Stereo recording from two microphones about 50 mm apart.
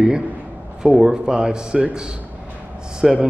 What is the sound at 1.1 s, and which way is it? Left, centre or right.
A man's voice, centre.